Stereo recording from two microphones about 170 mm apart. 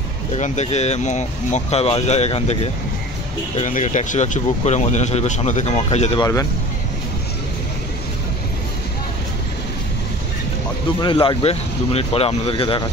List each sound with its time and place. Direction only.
0.3 s speech: 40° left (ahead or behind)
6.1 s speech: 20° left (ahead or behind)
11.0 s speech: 30° left (ahead or behind)